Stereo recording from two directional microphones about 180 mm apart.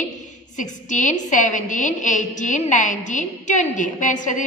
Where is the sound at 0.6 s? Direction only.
45° left (ahead or behind).